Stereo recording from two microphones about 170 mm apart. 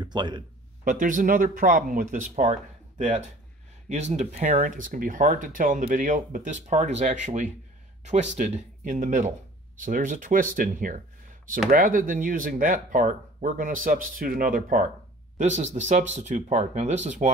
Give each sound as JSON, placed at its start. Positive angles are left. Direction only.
{"t": 0.0, "sound": "speech", "side_deg": -25}
{"t": 0.8, "sound": "speech", "side_deg": -50}
{"t": 15.3, "sound": "speech", "side_deg": -45}